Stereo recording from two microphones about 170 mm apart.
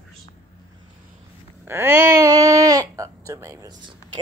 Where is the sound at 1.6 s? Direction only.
15° right (ahead or behind).